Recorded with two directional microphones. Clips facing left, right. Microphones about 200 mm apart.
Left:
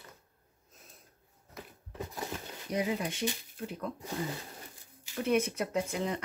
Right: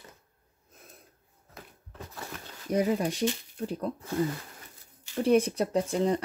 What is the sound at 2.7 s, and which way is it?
Speech, 45° right (ahead or behind).